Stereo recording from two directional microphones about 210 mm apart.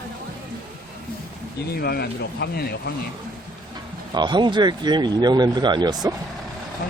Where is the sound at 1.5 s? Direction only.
45° left (ahead or behind).